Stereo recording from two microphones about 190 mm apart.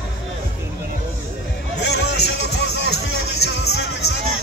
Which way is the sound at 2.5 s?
60° left (ahead or behind).